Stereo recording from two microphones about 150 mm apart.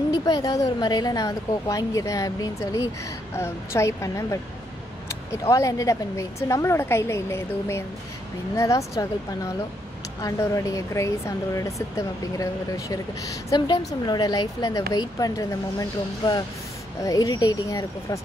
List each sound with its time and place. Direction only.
0.1 s a woman's voice: 25° left (ahead or behind)